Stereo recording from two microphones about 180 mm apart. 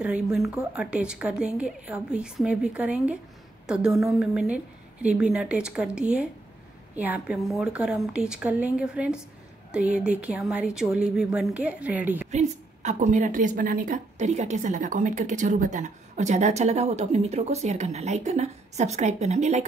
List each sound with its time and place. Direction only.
0.0 s a woman's voice: 5° right (ahead or behind)
12.3 s a woman's voice: 40° right (ahead or behind)